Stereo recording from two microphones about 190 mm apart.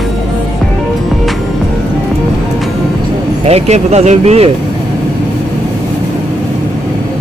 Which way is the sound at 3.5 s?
35° right (ahead or behind).